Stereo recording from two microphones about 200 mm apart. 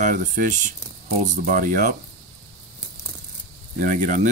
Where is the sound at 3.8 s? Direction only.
40° right (ahead or behind).